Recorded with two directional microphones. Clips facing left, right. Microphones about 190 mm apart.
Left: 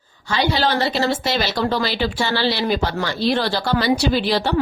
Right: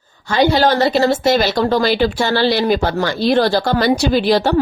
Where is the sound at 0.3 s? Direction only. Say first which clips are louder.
Right 6 dB; 50° right (ahead or behind).